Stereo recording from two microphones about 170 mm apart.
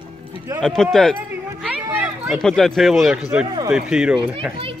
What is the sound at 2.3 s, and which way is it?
Speech, centre (ahead or behind).